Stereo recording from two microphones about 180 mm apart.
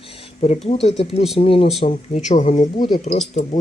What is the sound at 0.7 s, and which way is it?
Speech, 35° left (ahead or behind).